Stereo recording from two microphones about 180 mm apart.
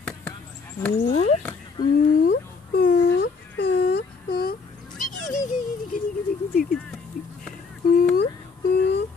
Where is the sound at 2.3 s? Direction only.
50° left (ahead or behind).